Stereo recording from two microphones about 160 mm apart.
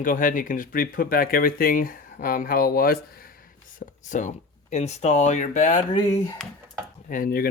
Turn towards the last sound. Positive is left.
turn(degrees=65)  # may be behind; listen again after turning